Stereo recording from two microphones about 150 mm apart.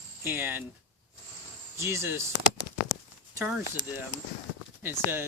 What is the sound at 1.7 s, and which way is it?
Speech, 15° right (ahead or behind).